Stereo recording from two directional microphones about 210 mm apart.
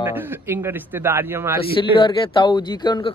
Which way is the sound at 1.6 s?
25° left (ahead or behind).